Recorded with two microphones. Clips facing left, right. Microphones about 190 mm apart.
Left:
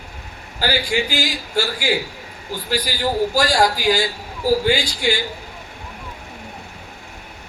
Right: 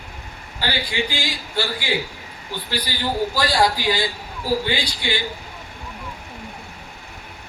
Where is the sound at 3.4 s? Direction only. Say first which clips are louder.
Left 2 dB; 45° left (ahead or behind).